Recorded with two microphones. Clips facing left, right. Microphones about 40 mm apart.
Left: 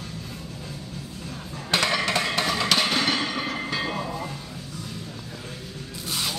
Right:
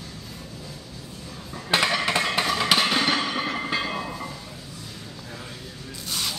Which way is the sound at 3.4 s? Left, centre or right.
Centre.